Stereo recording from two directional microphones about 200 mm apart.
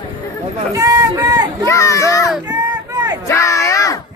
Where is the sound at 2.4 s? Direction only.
15° right (ahead or behind).